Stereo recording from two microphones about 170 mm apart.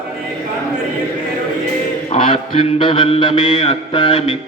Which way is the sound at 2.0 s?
30° left (ahead or behind).